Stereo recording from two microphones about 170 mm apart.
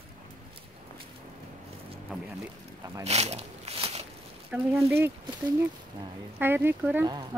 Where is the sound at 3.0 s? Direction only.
40° right (ahead or behind).